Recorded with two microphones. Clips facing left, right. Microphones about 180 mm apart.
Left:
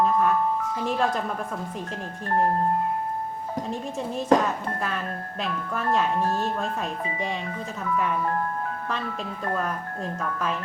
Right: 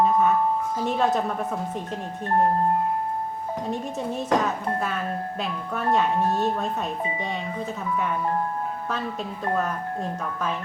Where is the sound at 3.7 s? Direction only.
Centre (ahead or behind).